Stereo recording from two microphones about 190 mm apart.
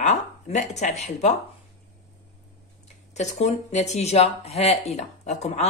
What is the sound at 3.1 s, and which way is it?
Speech, 35° left (ahead or behind).